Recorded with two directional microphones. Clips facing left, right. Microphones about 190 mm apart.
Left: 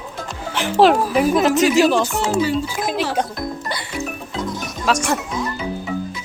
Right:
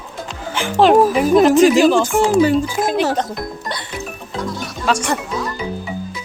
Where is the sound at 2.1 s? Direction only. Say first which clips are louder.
Right 6 dB; 50° right (ahead or behind).